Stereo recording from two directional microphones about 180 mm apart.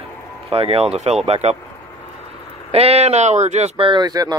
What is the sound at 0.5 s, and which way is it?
Speech, 30° right (ahead or behind).